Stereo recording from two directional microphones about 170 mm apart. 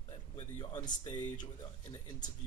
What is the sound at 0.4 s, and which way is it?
Speech, 30° left (ahead or behind).